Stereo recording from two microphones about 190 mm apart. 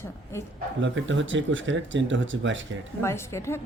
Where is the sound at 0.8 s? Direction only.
75° right (ahead or behind).